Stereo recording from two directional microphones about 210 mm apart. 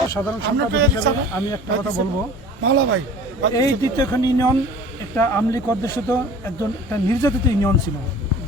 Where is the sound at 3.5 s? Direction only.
15° left (ahead or behind).